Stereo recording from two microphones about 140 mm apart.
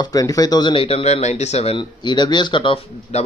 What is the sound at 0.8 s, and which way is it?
Speech, 45° left (ahead or behind).